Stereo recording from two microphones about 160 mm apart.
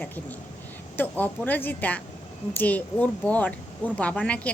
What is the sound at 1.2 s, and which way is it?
Speech, 10° left (ahead or behind).